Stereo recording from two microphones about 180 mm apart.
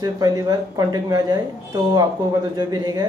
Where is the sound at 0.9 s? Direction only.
20° right (ahead or behind).